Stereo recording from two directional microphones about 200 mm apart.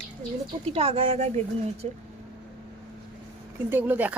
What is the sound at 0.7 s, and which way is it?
Speech, 30° right (ahead or behind).